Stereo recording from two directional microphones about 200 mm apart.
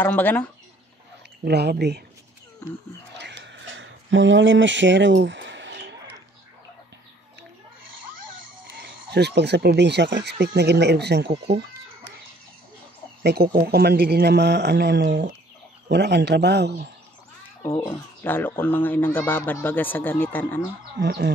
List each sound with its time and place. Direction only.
0.0 s speech: 10° left (ahead or behind)
1.4 s speech: 55° right (ahead or behind)
2.6 s speech: 10° left (ahead or behind)
3.2 s a sound: 60° right (ahead or behind)
8.7 s speech: 55° right (ahead or behind)
13.2 s a man's voice: 55° right (ahead or behind)
17.6 s speech: 15° left (ahead or behind)
21.0 s a man's voice: 55° right (ahead or behind)